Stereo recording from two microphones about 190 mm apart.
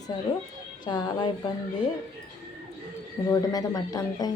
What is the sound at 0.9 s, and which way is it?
Speech, 20° left (ahead or behind).